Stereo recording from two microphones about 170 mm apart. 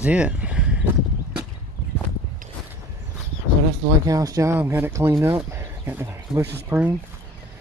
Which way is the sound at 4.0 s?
20° right (ahead or behind).